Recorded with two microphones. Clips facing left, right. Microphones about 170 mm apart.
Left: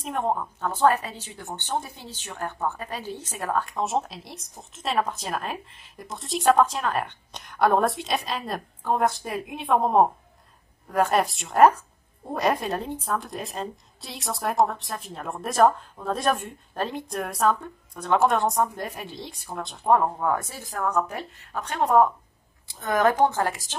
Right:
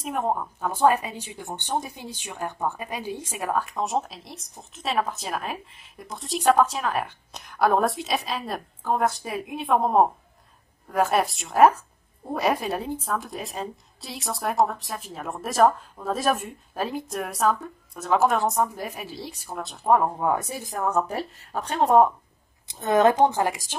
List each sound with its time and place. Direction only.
0.0 s a woman's voice: 5° right (ahead or behind)
20.2 s a woman's voice: 20° right (ahead or behind)